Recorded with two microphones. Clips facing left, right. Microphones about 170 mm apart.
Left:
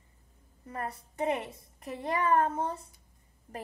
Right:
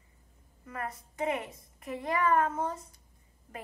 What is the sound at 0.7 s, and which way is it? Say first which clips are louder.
A woman's voice: left 1 dB; 35° left (ahead or behind).